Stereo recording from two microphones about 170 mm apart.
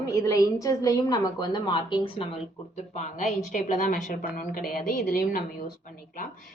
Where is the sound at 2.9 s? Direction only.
45° left (ahead or behind); by 5.4 s 60° left (ahead or behind).